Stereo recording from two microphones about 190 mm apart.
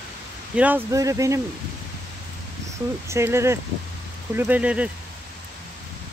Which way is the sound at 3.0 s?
15° right (ahead or behind).